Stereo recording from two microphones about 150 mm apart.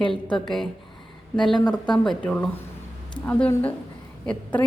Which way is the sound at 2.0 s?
5° left (ahead or behind).